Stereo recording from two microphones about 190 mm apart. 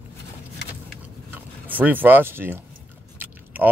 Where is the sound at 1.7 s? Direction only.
10° right (ahead or behind).